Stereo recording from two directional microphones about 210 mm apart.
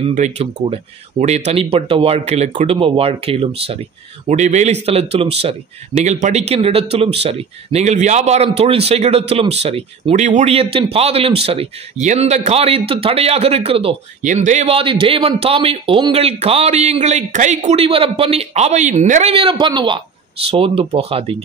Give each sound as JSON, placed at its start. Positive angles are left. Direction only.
{"t": 0.1, "sound": "speech", "side_deg": -35}